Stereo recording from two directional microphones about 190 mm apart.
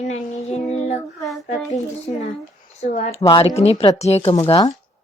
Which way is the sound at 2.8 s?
35° left (ahead or behind).